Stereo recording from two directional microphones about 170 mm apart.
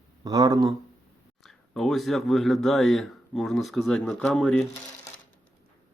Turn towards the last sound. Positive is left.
turn(degrees=5)  # may be behind; listen again after turning